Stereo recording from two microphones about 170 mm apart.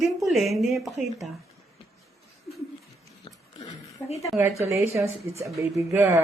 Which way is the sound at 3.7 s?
40° left (ahead or behind).